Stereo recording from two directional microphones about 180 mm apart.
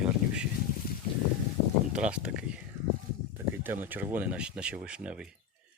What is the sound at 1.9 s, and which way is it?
Speech, 5° right (ahead or behind).